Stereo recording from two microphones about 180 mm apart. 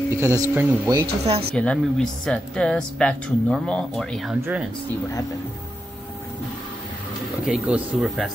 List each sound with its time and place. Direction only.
0.1 s speech: 15° right (ahead or behind)
1.5 s speech: 5° left (ahead or behind)
7.4 s speech: 5° right (ahead or behind)